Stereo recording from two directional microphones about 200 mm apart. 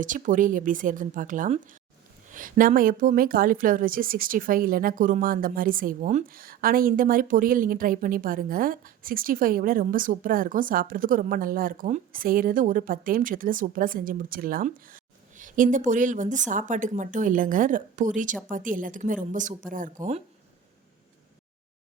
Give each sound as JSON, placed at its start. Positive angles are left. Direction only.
{"t": 0.0, "sound": "a woman's voice", "side_deg": -40}